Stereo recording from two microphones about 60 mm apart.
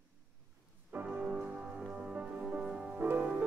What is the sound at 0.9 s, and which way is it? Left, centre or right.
Music, right.